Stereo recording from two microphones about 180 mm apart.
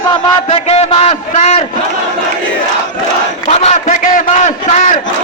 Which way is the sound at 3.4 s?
40° left (ahead or behind).